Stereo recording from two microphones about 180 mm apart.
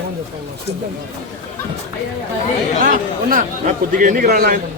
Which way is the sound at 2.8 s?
50° right (ahead or behind).